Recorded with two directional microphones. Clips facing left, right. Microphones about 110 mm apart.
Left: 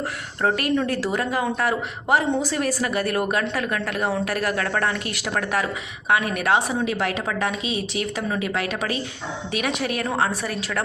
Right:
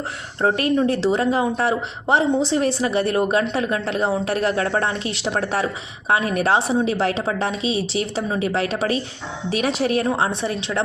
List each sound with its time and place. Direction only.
0.4 s a woman's voice: 30° right (ahead or behind)